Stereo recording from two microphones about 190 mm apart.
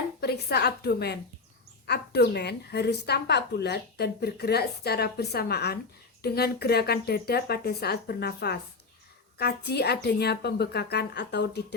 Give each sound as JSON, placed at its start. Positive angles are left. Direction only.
{"t": 0.2, "sound": "a woman's voice", "side_deg": 55}